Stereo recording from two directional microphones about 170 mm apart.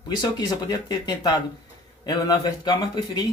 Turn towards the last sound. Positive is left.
turn(degrees=25)  # may be behind; listen again after turning